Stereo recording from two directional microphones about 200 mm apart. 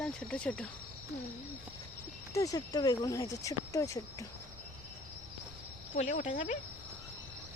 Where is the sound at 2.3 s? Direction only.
15° left (ahead or behind).